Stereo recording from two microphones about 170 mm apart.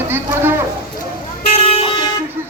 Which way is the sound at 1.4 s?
35° left (ahead or behind).